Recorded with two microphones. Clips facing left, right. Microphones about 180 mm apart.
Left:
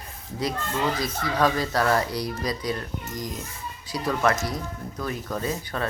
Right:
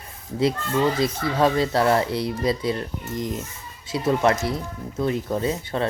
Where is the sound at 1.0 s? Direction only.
25° right (ahead or behind).